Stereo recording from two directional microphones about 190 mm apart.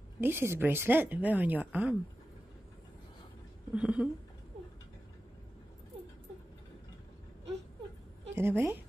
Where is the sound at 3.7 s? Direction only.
5° right (ahead or behind).